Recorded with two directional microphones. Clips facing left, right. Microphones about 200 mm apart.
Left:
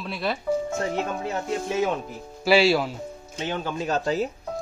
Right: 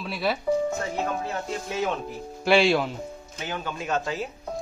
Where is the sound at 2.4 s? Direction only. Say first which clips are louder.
Left 1 dB; 5° left (ahead or behind).